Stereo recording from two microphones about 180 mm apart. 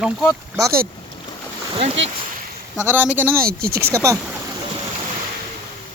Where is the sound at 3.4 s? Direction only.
55° right (ahead or behind).